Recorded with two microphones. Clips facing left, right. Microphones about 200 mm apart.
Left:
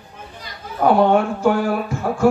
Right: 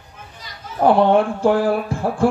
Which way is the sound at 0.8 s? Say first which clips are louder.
Right 1 dB; 30° right (ahead or behind).